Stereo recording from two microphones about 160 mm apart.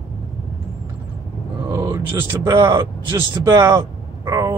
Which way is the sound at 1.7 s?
25° right (ahead or behind).